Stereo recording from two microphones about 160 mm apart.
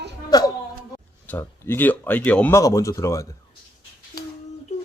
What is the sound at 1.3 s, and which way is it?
Speech, 15° left (ahead or behind).